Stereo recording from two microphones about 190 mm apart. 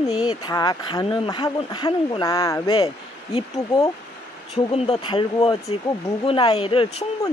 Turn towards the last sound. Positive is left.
turn(degrees=25)  # may be behind; listen again after turning